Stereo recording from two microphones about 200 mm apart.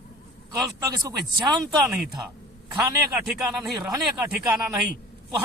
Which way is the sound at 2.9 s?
15° right (ahead or behind).